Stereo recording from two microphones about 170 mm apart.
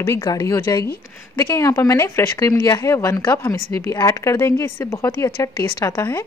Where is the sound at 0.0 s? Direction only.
20° left (ahead or behind).